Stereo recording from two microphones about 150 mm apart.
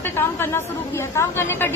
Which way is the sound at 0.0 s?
15° left (ahead or behind).